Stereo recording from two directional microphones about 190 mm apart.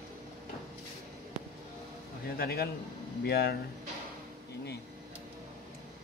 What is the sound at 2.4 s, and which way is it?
A man's voice, 55° left (ahead or behind).